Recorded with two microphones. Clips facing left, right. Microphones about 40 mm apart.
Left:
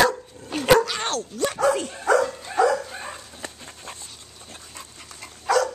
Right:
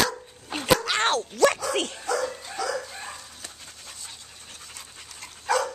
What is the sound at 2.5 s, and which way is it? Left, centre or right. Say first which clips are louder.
Dog: left 11 dB; left.